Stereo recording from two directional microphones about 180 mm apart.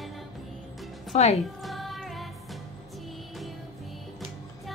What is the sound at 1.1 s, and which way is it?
Speech, 35° left (ahead or behind).